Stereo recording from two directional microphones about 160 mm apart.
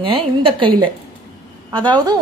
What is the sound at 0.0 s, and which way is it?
Speech, 35° right (ahead or behind).